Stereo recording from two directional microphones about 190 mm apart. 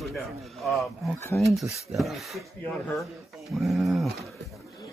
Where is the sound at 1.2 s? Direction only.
15° left (ahead or behind).